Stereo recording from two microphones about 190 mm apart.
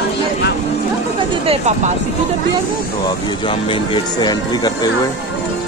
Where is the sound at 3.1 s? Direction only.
25° left (ahead or behind).